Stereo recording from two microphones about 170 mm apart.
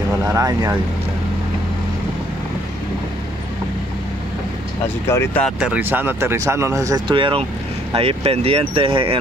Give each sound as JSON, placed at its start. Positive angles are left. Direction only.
{"t": 0.2, "sound": "speech", "side_deg": -20}
{"t": 5.0, "sound": "speech", "side_deg": 15}
{"t": 5.6, "sound": "speech", "side_deg": -10}